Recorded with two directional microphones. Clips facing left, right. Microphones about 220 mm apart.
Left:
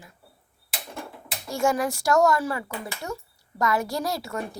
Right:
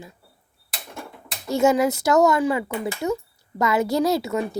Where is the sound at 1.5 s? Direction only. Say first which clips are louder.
Right 6 dB; 20° right (ahead or behind).